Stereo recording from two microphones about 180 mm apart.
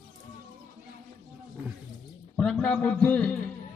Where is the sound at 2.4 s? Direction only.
5° left (ahead or behind).